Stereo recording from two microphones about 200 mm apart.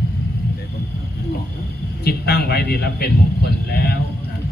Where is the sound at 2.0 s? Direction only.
50° left (ahead or behind).